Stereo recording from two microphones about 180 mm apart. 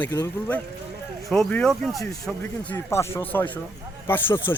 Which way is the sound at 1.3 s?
5° left (ahead or behind).